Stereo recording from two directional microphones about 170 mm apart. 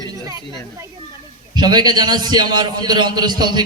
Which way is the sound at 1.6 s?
25° right (ahead or behind).